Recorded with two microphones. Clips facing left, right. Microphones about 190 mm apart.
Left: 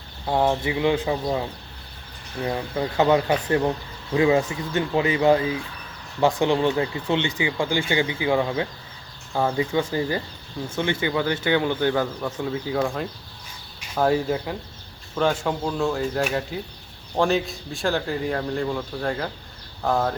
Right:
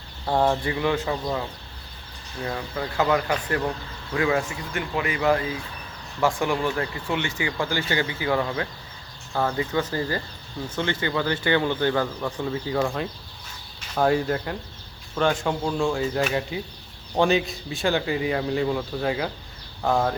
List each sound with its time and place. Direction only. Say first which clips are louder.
0.3 s speech: even; 5° left (ahead or behind); by 1.5 s 25° left (ahead or behind)
2.5 s speech: left 4 dB; 20° left (ahead or behind); by 20.1 s centre (ahead or behind)